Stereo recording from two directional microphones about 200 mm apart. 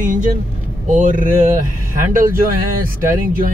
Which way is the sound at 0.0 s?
40° right (ahead or behind).